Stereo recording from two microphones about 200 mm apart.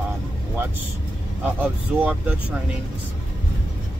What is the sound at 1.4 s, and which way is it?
Speech, 5° right (ahead or behind).